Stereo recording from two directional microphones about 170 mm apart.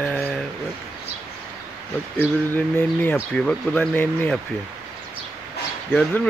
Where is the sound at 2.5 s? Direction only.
10° left (ahead or behind).